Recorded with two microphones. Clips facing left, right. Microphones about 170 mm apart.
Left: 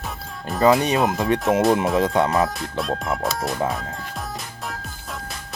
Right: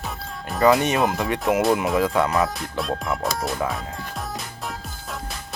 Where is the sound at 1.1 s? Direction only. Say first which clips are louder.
Left 2 dB; 20° left (ahead or behind).